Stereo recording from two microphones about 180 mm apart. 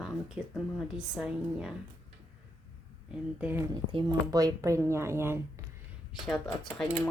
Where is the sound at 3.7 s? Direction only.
25° right (ahead or behind).